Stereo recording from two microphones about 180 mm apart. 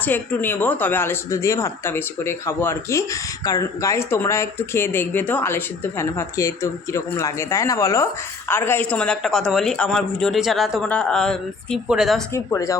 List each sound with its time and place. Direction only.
0.0 s speech: 10° left (ahead or behind)
12.3 s speech: 15° left (ahead or behind)